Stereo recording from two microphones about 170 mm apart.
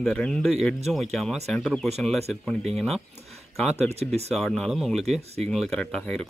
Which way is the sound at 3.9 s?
40° right (ahead or behind).